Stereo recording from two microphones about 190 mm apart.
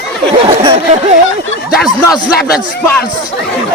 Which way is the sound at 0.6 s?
25° right (ahead or behind).